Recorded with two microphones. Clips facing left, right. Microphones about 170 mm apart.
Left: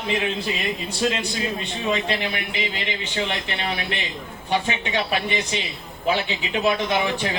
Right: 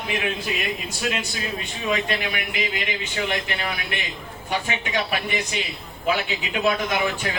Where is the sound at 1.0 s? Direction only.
30° left (ahead or behind).